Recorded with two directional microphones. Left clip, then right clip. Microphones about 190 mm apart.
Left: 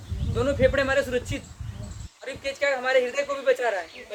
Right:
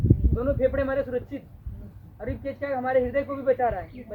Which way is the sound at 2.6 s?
15° left (ahead or behind).